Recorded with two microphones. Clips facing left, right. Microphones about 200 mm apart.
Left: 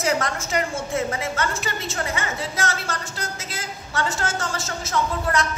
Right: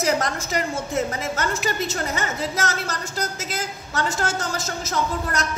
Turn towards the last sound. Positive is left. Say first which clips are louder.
# left 2 dB
turn(degrees=-40)  # may be behind; listen again after turning